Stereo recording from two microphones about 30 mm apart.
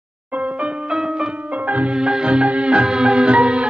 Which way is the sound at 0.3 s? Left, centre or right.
Right.